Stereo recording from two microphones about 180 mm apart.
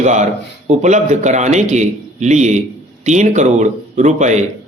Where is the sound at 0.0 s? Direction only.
40° right (ahead or behind).